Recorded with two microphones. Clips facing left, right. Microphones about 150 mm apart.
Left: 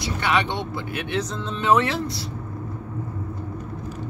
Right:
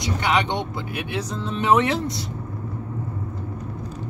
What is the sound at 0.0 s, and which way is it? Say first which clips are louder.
Speech: right 1 dB; 15° right (ahead or behind).